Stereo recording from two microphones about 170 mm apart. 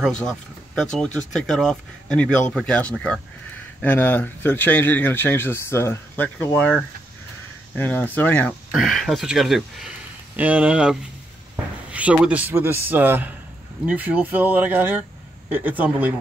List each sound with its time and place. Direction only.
0.2 s speech: 5° left (ahead or behind)